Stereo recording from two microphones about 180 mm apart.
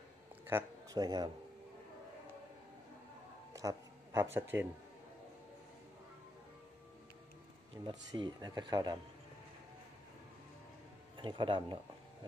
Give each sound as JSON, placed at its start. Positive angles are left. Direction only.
{"t": 0.5, "sound": "speech", "side_deg": -15}
{"t": 3.5, "sound": "speech", "side_deg": -15}
{"t": 7.7, "sound": "speech", "side_deg": -25}
{"t": 11.1, "sound": "speech", "side_deg": -25}